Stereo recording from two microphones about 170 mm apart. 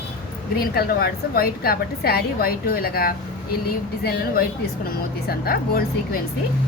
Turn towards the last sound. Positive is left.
turn(degrees=60)  # may be behind; listen again after turning